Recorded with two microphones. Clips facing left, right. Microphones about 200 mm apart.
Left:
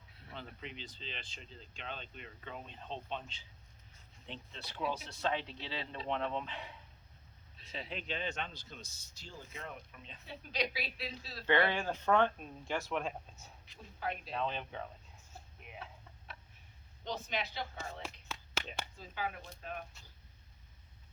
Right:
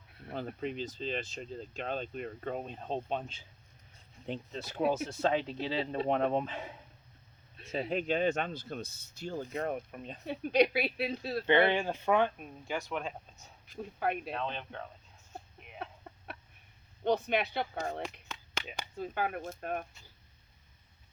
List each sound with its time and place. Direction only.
0.3 s speech: 50° right (ahead or behind)
11.4 s speech: 20° right (ahead or behind); by 13.5 s centre (ahead or behind)
13.7 s speech: 60° right (ahead or behind)
14.3 s speech: 5° left (ahead or behind)
15.8 s a sound: 55° right (ahead or behind)
17.0 s speech: 60° right (ahead or behind)
18.6 s a sound: 5° right (ahead or behind)
18.9 s speech: 55° right (ahead or behind)